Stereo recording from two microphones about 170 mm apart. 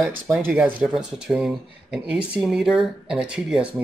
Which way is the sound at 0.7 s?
5° right (ahead or behind).